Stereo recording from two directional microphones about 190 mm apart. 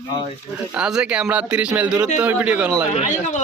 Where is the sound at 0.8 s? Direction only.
5° right (ahead or behind).